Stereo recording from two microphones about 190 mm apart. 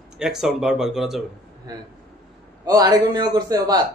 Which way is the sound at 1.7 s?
20° right (ahead or behind).